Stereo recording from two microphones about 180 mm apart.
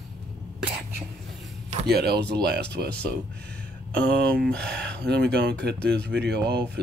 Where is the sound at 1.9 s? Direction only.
65° right (ahead or behind).